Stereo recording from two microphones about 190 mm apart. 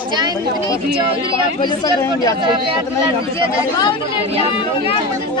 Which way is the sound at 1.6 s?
20° left (ahead or behind).